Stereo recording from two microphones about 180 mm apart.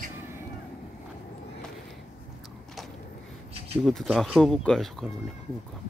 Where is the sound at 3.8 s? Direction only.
Centre (ahead or behind).